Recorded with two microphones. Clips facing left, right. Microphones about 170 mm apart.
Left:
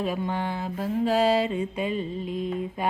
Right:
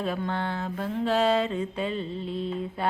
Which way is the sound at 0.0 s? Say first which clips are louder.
Left 1 dB; 10° left (ahead or behind).